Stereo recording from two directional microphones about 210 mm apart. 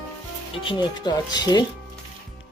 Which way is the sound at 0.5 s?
25° left (ahead or behind).